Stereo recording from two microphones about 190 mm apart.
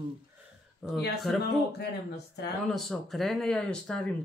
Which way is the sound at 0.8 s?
Centre (ahead or behind).